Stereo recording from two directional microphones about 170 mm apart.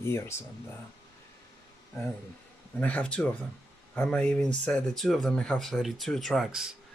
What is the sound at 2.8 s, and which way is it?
A man's voice, 10° left (ahead or behind).